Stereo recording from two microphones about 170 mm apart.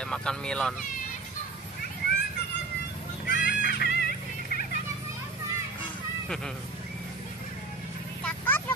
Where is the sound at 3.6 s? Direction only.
70° left (ahead or behind).